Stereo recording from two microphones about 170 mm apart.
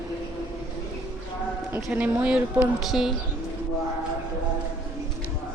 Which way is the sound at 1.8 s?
10° right (ahead or behind).